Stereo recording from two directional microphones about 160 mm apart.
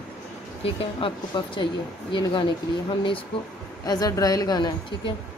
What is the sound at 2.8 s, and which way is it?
A woman's voice, 30° left (ahead or behind).